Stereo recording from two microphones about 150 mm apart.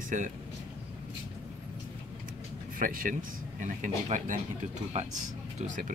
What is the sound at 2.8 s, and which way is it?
Speech, 65° right (ahead or behind).